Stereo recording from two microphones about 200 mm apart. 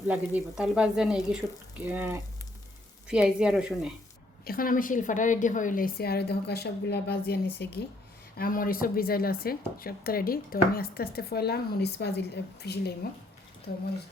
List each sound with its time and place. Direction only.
0.1 s speech: 5° right (ahead or behind)
4.4 s a woman's voice: 45° left (ahead or behind)
8.4 s a woman's voice: 45° left (ahead or behind)